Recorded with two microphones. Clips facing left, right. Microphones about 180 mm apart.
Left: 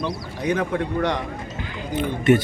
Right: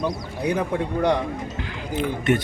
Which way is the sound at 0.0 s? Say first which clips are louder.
Right 1 dB; 10° right (ahead or behind).